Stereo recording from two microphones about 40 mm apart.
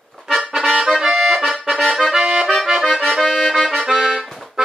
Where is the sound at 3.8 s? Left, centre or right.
Centre.